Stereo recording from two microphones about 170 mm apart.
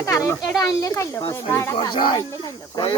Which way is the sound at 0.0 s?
20° left (ahead or behind).